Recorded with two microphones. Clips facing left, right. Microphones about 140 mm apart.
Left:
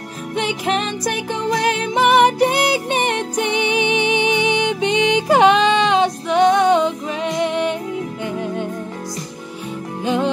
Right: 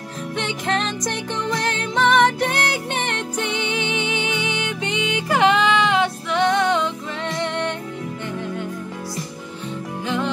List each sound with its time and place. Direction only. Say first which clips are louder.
0.4 s music: left 4 dB; 15° left (ahead or behind)
10.0 s music: left 5 dB; 20° left (ahead or behind)